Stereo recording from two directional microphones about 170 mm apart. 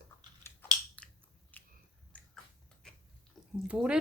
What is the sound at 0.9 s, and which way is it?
Biting, 10° left (ahead or behind).